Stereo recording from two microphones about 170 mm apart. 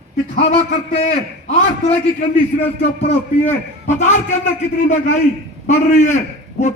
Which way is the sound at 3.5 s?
45° left (ahead or behind).